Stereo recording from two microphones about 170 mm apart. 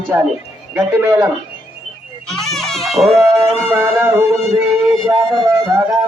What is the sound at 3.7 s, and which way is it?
Speech, 15° right (ahead or behind).